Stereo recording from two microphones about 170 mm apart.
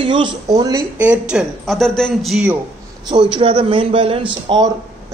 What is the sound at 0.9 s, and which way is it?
A man's voice, 10° right (ahead or behind).